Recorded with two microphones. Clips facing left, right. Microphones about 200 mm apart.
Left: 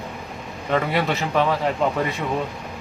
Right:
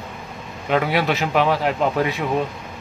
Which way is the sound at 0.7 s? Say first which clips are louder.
Right 2 dB; 5° right (ahead or behind).